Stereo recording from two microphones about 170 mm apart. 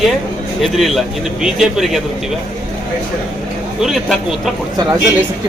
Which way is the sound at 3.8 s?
Centre (ahead or behind).